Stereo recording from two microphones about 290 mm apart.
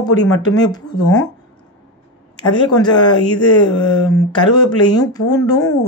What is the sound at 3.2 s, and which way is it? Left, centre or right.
Speech, left.